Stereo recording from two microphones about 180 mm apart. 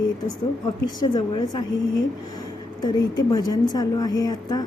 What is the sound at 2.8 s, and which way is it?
A woman's voice, 20° left (ahead or behind).